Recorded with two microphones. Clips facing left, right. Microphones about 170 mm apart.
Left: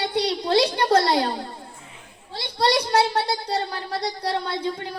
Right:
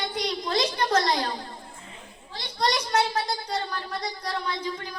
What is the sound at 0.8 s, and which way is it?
Speech, 35° left (ahead or behind).